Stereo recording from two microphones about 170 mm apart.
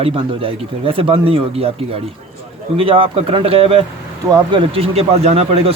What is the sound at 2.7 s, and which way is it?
Speech, 35° right (ahead or behind).